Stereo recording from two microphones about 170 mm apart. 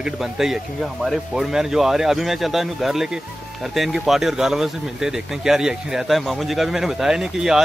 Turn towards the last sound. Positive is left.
turn(degrees=-5)  # may be behind; listen again after turning